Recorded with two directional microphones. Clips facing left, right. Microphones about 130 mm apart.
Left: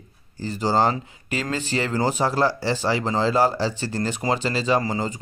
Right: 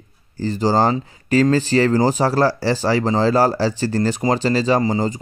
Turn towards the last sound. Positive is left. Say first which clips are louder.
# right 5 dB
turn(degrees=-35)  # may be behind; listen again after turning